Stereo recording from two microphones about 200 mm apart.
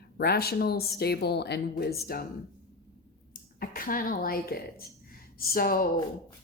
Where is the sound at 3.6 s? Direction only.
45° left (ahead or behind).